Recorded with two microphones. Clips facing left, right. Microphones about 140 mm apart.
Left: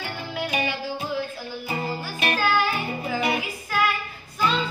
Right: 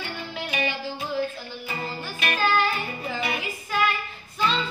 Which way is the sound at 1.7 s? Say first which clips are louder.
Left 4 dB; 35° left (ahead or behind).